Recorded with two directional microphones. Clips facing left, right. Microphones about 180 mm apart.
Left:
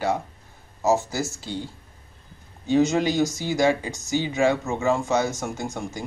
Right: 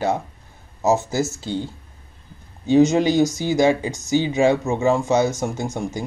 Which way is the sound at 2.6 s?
20° right (ahead or behind).